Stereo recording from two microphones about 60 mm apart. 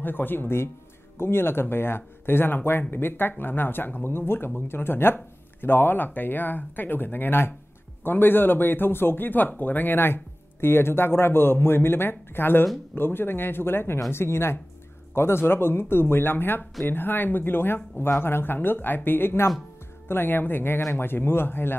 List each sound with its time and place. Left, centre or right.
0.0 s speech: left